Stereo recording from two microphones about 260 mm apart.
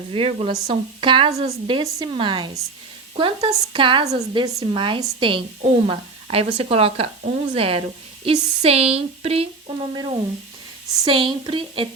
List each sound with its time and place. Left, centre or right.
0.1 s a woman's voice: right